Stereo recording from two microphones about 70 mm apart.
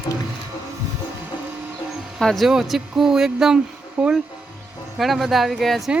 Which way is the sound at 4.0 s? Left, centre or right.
Centre.